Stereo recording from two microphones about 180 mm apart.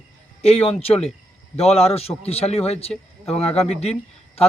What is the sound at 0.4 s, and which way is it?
Speech, 35° left (ahead or behind).